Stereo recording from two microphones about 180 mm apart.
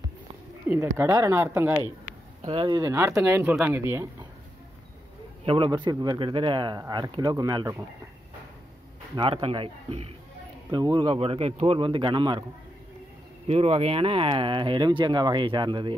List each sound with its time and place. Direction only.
0.7 s speech: 10° right (ahead or behind)
2.4 s speech: 30° right (ahead or behind)
2.8 s speech: 15° right (ahead or behind)
5.4 s speech: 30° right (ahead or behind)
9.1 s speech: 30° right (ahead or behind)
13.5 s speech: 35° right (ahead or behind)